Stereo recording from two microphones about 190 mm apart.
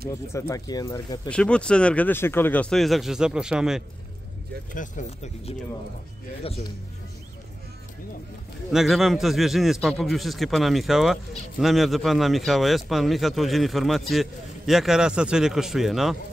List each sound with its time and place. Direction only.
0.3 s speech: 15° left (ahead or behind)
1.3 s a man's voice: 5° left (ahead or behind)
4.7 s speech: 40° left (ahead or behind)
8.7 s a man's voice: centre (ahead or behind)